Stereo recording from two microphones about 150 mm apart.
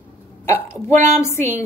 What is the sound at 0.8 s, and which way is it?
Speech, 15° left (ahead or behind).